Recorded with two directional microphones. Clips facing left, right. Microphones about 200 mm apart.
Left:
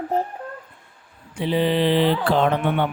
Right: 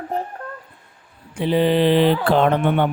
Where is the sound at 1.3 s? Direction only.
50° right (ahead or behind).